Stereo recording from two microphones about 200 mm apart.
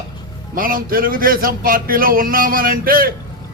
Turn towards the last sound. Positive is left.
turn(degrees=-45)  # may be behind; listen again after turning